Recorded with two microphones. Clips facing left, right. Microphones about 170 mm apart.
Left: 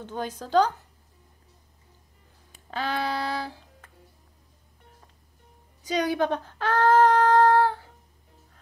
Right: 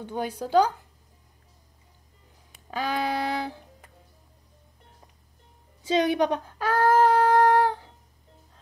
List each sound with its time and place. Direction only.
0.0 s a woman's voice: 10° right (ahead or behind)
2.7 s music: 15° right (ahead or behind)
5.9 s child singing: 25° right (ahead or behind)